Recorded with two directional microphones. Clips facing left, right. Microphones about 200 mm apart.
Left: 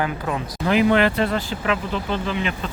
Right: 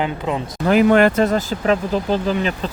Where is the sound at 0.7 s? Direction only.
45° right (ahead or behind).